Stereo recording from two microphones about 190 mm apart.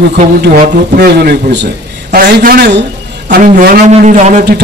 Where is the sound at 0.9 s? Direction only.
60° right (ahead or behind).